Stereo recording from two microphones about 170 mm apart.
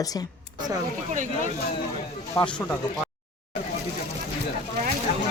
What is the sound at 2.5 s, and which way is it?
Speech, 5° left (ahead or behind).